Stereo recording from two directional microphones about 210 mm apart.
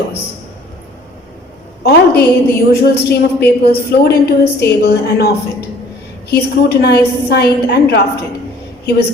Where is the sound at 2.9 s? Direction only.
50° left (ahead or behind).